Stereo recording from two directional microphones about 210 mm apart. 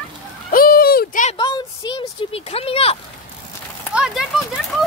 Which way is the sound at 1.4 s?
20° left (ahead or behind).